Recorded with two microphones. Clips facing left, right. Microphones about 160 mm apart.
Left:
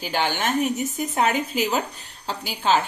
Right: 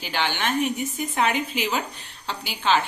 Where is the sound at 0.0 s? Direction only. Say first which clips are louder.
Left 2 dB; 45° left (ahead or behind).